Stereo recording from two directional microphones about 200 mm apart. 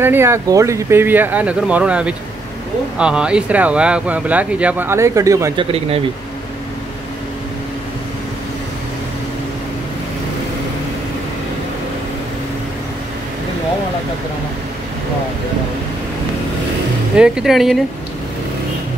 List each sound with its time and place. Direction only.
0.0 s speech: 10° right (ahead or behind)
5.7 s speech: 30° right (ahead or behind)
17.2 s speech: 5° right (ahead or behind)